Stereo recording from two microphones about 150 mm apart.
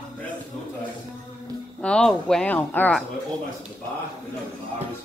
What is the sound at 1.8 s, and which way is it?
Speech, 5° left (ahead or behind).